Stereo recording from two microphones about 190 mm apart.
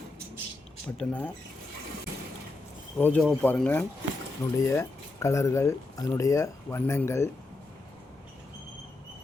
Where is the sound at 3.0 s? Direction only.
10° left (ahead or behind).